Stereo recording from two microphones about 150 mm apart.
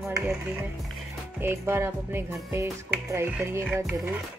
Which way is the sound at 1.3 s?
15° right (ahead or behind).